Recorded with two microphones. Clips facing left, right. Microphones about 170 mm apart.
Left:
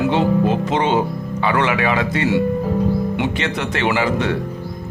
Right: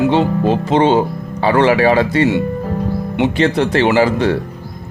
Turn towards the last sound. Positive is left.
turn(degrees=-35)  # may be behind; listen again after turning